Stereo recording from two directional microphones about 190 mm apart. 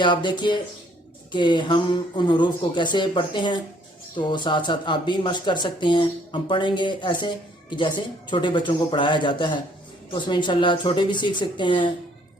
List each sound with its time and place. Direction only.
0.0 s speech: 25° left (ahead or behind)